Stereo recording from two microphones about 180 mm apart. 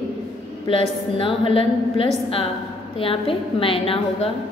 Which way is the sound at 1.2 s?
30° left (ahead or behind).